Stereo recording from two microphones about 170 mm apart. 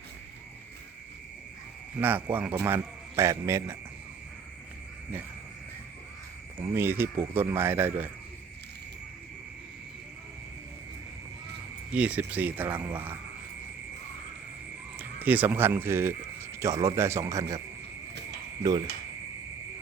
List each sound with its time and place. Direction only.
2.0 s speech: 10° right (ahead or behind)
6.6 s speech: 15° right (ahead or behind)
11.9 s speech: 10° right (ahead or behind)
14.9 s speech: 10° right (ahead or behind)